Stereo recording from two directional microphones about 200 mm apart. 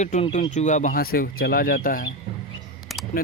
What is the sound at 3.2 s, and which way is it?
Speech, 50° left (ahead or behind).